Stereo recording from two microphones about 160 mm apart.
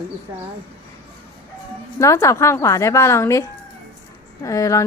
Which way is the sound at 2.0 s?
20° left (ahead or behind).